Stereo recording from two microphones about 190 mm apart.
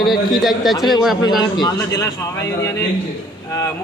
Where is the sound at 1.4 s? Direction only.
20° left (ahead or behind).